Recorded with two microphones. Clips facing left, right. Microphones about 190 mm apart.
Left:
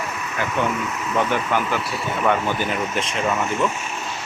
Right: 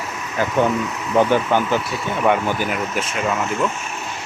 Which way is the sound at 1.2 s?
30° right (ahead or behind).